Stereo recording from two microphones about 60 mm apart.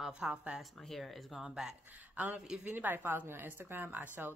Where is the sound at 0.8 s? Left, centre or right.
Centre.